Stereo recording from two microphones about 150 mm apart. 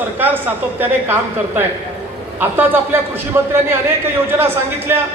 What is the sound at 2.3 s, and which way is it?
A man's voice, 15° right (ahead or behind).